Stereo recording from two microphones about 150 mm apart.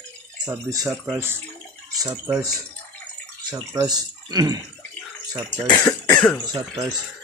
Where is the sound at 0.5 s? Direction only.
25° right (ahead or behind).